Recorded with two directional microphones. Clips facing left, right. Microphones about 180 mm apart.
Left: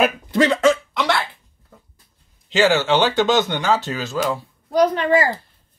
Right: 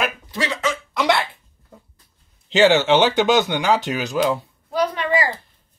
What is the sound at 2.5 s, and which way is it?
Speech, 20° right (ahead or behind).